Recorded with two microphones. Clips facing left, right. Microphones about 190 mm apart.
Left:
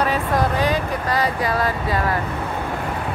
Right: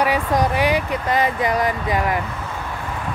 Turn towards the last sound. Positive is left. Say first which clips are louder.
# right 1 dB
turn(degrees=-15)  # may be behind; listen again after turning